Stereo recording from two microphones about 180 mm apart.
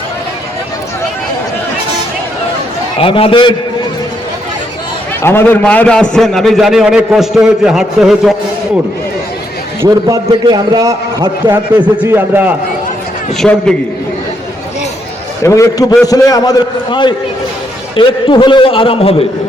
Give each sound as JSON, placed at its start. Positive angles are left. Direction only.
{"t": 3.0, "sound": "a man's voice", "side_deg": 30}
{"t": 5.2, "sound": "a man's voice", "side_deg": 10}
{"t": 9.8, "sound": "a man's voice", "side_deg": -20}
{"t": 11.8, "sound": "a man's voice", "side_deg": -10}
{"t": 15.4, "sound": "a man's voice", "side_deg": 20}